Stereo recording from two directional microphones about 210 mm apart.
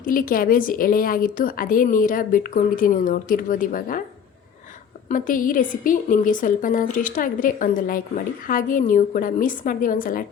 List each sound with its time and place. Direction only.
0.0 s a woman's voice: 40° left (ahead or behind)
5.0 s a woman's voice: 40° left (ahead or behind)